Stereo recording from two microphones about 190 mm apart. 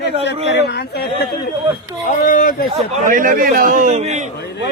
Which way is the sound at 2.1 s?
45° left (ahead or behind).